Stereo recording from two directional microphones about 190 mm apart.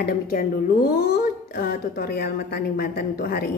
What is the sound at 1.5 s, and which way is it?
A woman's voice, 50° left (ahead or behind).